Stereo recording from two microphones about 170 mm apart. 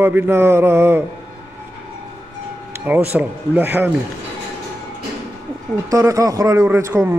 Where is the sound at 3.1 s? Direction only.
10° right (ahead or behind).